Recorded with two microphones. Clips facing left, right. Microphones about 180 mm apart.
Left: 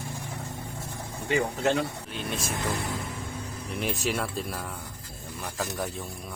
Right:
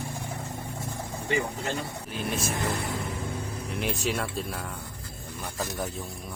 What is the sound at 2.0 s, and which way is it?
Speech, centre (ahead or behind).